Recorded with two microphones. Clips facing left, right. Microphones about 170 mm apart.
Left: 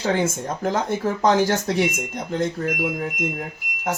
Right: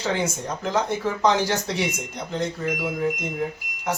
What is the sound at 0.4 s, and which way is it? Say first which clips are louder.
Speech: left 1 dB; 50° left (ahead or behind).